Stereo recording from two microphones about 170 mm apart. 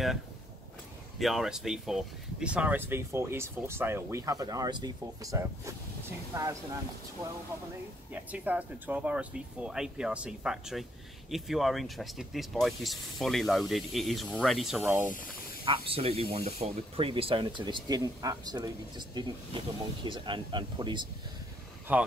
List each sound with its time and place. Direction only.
1.2 s speech: centre (ahead or behind); by 6.5 s 20° right (ahead or behind)
8.1 s speech: 10° right (ahead or behind)
15.6 s speech: 30° right (ahead or behind)
21.9 s speech: 10° right (ahead or behind)